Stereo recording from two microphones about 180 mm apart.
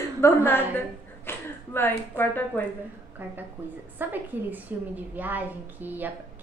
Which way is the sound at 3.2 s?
10° right (ahead or behind).